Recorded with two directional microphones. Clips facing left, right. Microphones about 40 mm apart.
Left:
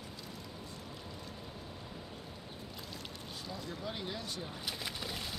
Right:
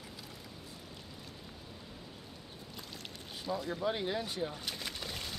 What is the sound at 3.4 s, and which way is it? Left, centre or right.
Speech, centre.